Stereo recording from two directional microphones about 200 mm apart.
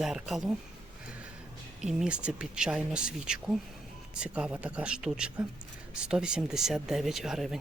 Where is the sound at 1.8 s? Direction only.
5° right (ahead or behind).